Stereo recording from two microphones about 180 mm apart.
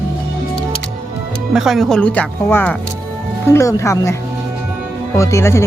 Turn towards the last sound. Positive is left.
turn(degrees=15)  # may be behind; listen again after turning